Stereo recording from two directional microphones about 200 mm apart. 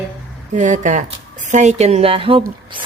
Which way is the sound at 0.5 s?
40° right (ahead or behind).